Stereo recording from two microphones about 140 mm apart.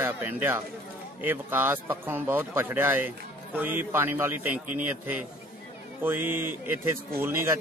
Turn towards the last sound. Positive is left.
turn(degrees=-15)  # may be behind; listen again after turning